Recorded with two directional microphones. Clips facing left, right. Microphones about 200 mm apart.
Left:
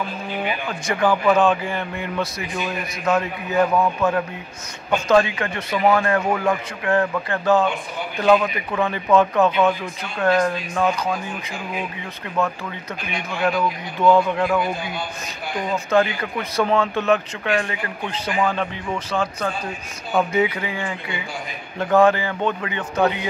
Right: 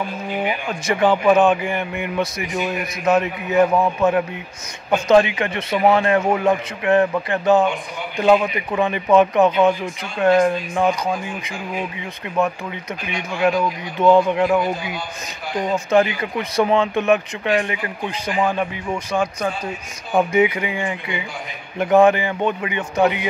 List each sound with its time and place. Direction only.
0.5 s a man's voice: 20° right (ahead or behind)
12.4 s a man's voice: 15° right (ahead or behind)
14.0 s a man's voice: 20° right (ahead or behind)
15.9 s a man's voice: 20° right (ahead or behind)
20.1 s a man's voice: 15° right (ahead or behind)